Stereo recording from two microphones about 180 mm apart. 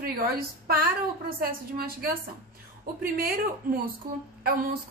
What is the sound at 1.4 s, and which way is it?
A woman's voice, 55° right (ahead or behind).